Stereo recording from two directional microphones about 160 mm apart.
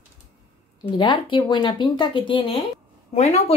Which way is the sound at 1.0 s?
30° left (ahead or behind).